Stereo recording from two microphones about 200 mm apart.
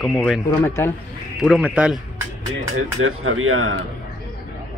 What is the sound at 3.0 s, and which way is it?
Speech, 90° right.